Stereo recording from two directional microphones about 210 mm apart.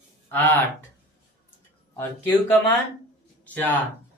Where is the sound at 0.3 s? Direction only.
10° left (ahead or behind).